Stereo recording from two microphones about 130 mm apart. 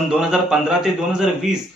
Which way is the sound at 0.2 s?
5° right (ahead or behind).